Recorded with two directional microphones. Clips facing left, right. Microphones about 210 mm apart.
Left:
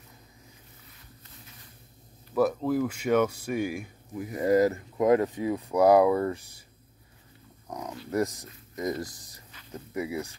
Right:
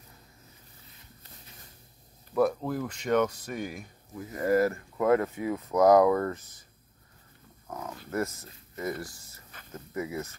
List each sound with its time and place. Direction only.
2.3 s speech: 5° left (ahead or behind)
7.6 s speech: 15° left (ahead or behind)